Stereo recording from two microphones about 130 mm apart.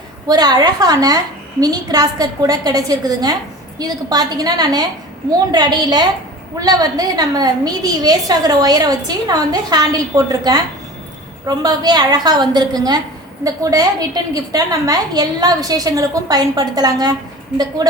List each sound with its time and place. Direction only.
0.3 s a woman's voice: 30° right (ahead or behind)